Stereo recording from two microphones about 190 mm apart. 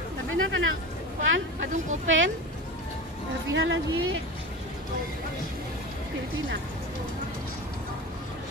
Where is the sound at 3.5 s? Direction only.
90° right.